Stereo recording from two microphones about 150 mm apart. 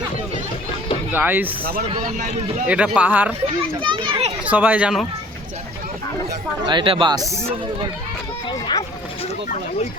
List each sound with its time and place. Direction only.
1.1 s speech: 10° right (ahead or behind)
2.1 s speech: 50° right (ahead or behind)
2.6 s speech: 10° right (ahead or behind)
3.8 s a child's voice: 35° right (ahead or behind)
4.4 s speech: 10° right (ahead or behind)
6.7 s speech: 35° right (ahead or behind)